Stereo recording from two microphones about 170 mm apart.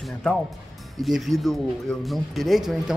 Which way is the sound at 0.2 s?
5° left (ahead or behind).